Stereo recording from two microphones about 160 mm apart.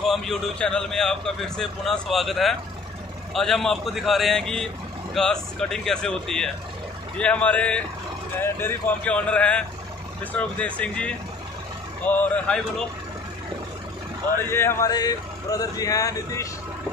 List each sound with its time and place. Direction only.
0.0 s a man's voice: centre (ahead or behind)
14.5 s speech: 15° left (ahead or behind)